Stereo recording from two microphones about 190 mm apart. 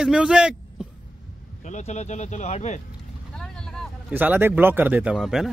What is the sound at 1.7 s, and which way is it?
Speech, 35° left (ahead or behind).